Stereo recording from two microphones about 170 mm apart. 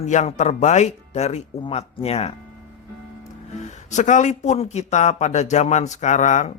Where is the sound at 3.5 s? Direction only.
45° left (ahead or behind).